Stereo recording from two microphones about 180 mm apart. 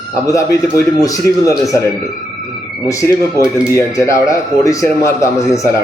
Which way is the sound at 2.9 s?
15° left (ahead or behind).